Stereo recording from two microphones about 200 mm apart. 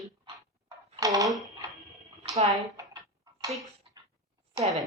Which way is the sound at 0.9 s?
20° right (ahead or behind).